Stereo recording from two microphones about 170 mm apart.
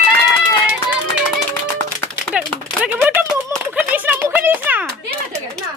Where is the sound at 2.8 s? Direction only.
10° right (ahead or behind).